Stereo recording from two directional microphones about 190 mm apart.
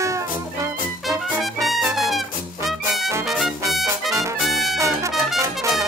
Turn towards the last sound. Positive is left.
turn(degrees=-15)  # may be behind; listen again after turning